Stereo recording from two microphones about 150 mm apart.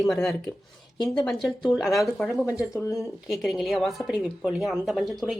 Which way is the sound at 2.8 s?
20° left (ahead or behind).